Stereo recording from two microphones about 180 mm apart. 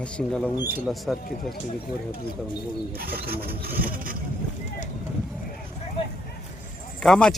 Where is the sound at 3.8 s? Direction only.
50° right (ahead or behind).